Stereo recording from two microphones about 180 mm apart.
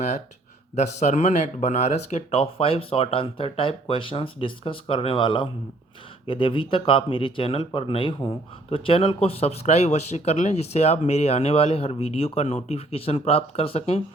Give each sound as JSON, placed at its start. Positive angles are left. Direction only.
{"t": 0.8, "sound": "speech", "side_deg": 40}